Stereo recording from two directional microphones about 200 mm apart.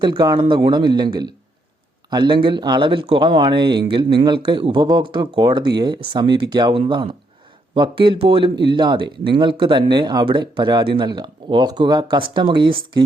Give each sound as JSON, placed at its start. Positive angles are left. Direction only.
{"t": 0.0, "sound": "speech", "side_deg": -20}